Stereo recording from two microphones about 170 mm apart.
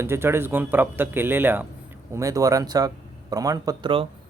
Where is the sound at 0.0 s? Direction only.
15° right (ahead or behind).